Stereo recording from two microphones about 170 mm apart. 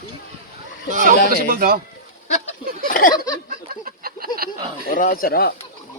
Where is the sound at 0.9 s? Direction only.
50° right (ahead or behind).